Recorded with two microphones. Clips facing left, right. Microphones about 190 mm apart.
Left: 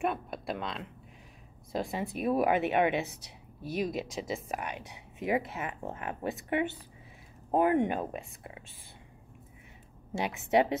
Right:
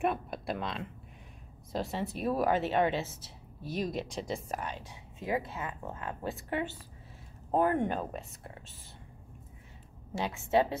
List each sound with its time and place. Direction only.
0.0 s speech: centre (ahead or behind)
1.7 s speech: 10° left (ahead or behind)
10.1 s speech: 15° left (ahead or behind)